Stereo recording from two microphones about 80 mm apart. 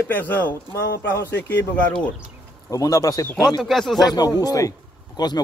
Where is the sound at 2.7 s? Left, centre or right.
Left.